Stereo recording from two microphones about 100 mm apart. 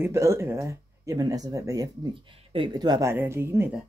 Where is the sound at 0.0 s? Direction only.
30° right (ahead or behind); by 3.1 s 45° right (ahead or behind).